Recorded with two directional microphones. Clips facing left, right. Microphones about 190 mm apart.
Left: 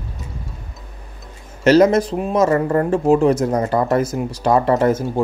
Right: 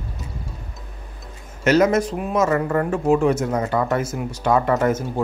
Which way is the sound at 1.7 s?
35° left (ahead or behind).